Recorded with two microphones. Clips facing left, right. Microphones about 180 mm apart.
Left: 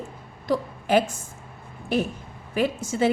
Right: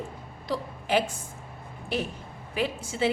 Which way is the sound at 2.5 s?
45° left (ahead or behind).